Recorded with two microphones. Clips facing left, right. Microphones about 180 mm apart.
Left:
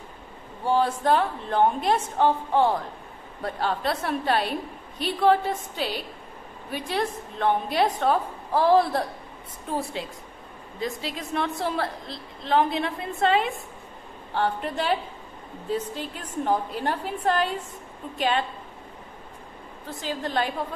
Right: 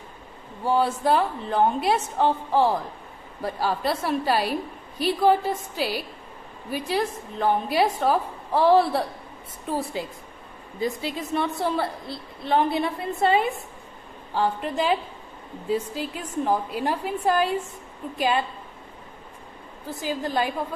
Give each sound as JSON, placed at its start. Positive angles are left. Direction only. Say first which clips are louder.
{"t": 0.7, "sound": "a woman's voice", "louder": "even", "side_deg": -5}
{"t": 10.8, "sound": "a woman's voice", "louder": "right 3 dB", "side_deg": 0}
{"t": 20.0, "sound": "a woman's voice", "louder": "right 2 dB", "side_deg": -5}